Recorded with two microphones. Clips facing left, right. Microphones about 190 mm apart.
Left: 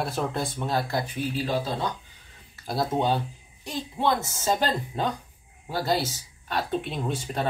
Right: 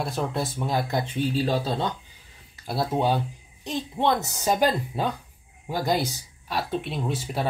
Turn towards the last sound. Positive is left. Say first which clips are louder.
# right 1 dB
turn(degrees=-5)  # may be behind; listen again after turning